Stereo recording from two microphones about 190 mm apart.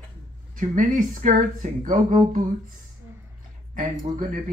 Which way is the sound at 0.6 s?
45° right (ahead or behind).